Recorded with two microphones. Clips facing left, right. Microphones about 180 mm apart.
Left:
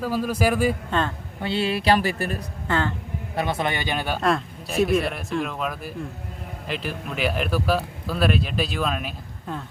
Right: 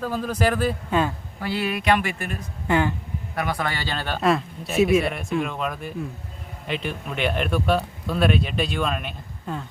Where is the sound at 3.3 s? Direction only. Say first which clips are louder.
Left 2 dB; 25° left (ahead or behind).